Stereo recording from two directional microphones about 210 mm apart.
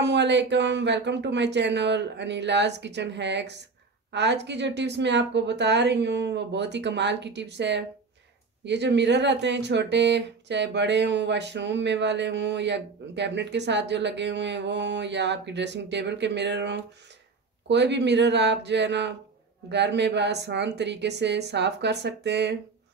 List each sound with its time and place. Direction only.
0.0 s speech: 55° right (ahead or behind)